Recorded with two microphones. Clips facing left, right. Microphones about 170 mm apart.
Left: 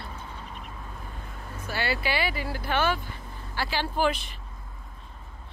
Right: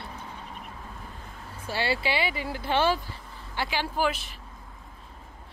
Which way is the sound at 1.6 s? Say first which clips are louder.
Right 1 dB; 30° right (ahead or behind).